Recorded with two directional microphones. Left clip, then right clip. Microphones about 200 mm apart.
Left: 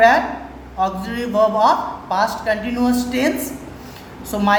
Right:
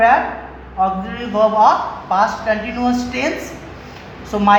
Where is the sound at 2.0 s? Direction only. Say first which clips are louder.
Right 3 dB; 25° left (ahead or behind).